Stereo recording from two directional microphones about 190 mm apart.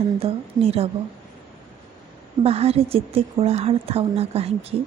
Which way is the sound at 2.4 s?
30° right (ahead or behind).